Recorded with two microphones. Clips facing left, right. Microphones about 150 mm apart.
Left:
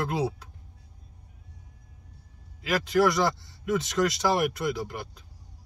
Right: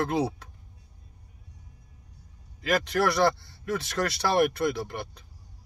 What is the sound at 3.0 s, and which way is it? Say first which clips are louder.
Speech: left 2 dB; 15° left (ahead or behind).